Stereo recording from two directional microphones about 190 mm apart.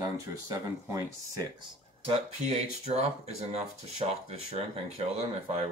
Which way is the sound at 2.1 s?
35° right (ahead or behind).